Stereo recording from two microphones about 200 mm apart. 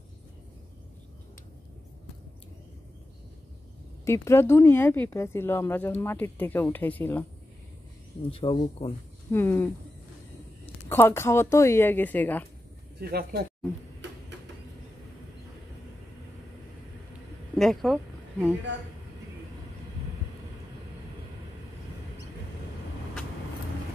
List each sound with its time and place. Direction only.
4.0 s speech: 15° left (ahead or behind)
8.3 s speech: 30° left (ahead or behind)
9.3 s speech: 10° left (ahead or behind)
10.9 s speech: 10° left (ahead or behind)
13.0 s speech: 50° right (ahead or behind)
17.6 s speech: centre (ahead or behind)